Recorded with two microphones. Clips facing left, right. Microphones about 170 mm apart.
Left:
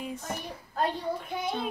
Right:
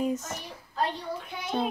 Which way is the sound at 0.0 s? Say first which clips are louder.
Right 6 dB; 45° right (ahead or behind).